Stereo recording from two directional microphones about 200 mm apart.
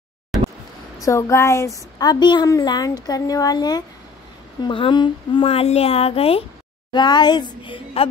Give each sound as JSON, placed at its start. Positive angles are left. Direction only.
{"t": 1.0, "sound": "a woman's voice", "side_deg": 15}